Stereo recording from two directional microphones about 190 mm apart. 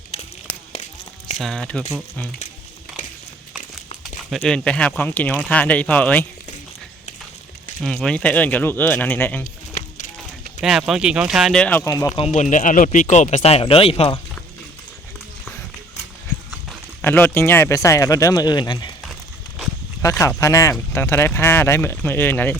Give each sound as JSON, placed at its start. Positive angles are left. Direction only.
{"t": 0.1, "sound": "a sound", "side_deg": 30}
{"t": 1.4, "sound": "speech", "side_deg": 0}
{"t": 4.3, "sound": "speech", "side_deg": 5}
{"t": 7.8, "sound": "speech", "side_deg": 5}
{"t": 10.6, "sound": "speech", "side_deg": 0}
{"t": 12.1, "sound": "speech", "side_deg": 35}
{"t": 17.0, "sound": "speech", "side_deg": 10}
{"t": 20.0, "sound": "speech", "side_deg": 15}